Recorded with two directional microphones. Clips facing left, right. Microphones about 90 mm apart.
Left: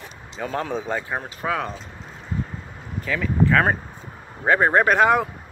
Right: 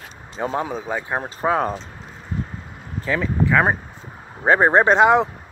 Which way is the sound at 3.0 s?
30° right (ahead or behind).